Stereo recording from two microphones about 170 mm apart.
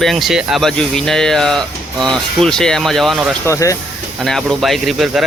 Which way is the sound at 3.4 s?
20° left (ahead or behind).